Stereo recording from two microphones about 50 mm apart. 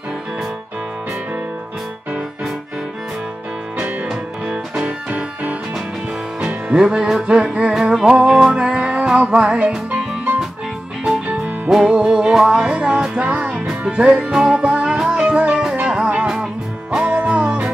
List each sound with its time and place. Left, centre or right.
4.5 s music: right
6.4 s music: centre
11.9 s music: centre